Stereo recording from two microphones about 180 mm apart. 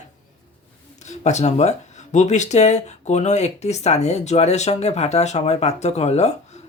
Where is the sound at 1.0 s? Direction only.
40° left (ahead or behind).